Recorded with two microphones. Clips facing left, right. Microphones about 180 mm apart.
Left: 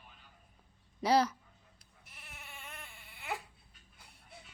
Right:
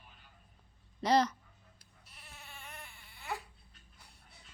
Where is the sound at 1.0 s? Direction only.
10° left (ahead or behind).